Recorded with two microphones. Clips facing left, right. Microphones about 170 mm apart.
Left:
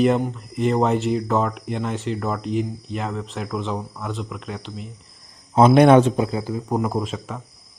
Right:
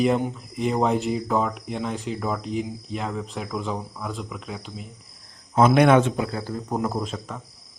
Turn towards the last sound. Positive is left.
turn(degrees=5)  # may be behind; listen again after turning